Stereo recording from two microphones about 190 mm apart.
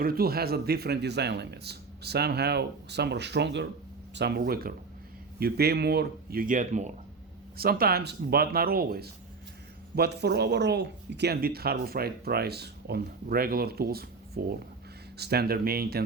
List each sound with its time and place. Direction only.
0.0 s speech: 50° right (ahead or behind)
7.5 s speech: 50° right (ahead or behind)